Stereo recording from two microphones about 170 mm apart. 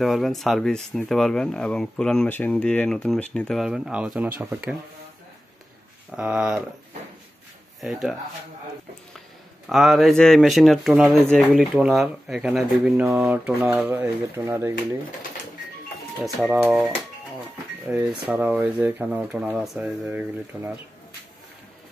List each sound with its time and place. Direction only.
0.0 s speech: centre (ahead or behind)
6.1 s speech: 5° right (ahead or behind)
7.8 s speech: centre (ahead or behind)
9.7 s speech: centre (ahead or behind)
11.2 s speech: centre (ahead or behind); by 14.7 s 15° right (ahead or behind)
17.8 s speech: 5° right (ahead or behind)